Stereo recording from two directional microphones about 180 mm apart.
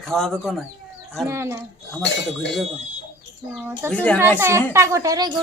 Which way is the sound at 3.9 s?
5° left (ahead or behind).